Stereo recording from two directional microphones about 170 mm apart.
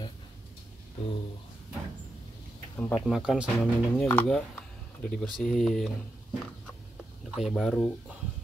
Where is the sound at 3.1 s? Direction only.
5° right (ahead or behind).